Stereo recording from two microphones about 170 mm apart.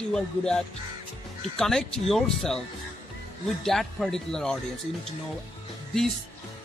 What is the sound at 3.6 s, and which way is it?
Speech, centre (ahead or behind).